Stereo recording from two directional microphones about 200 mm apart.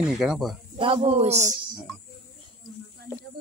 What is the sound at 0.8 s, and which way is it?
Speech, 30° right (ahead or behind).